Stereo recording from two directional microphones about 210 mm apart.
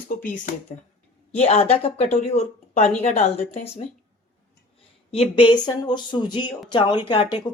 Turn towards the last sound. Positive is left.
turn(degrees=20)  # may be behind; listen again after turning